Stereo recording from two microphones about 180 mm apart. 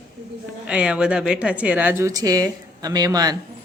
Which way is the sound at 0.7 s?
5° right (ahead or behind).